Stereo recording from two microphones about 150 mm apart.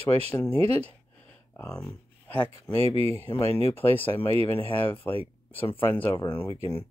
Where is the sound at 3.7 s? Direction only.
15° left (ahead or behind).